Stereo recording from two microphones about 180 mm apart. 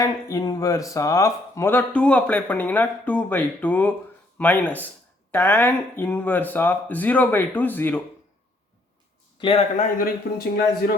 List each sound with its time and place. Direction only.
0.0 s speech: 20° left (ahead or behind)
9.4 s speech: 35° left (ahead or behind); by 10.4 s 50° left (ahead or behind)